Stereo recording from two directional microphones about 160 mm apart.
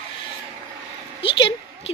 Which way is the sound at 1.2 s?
35° left (ahead or behind).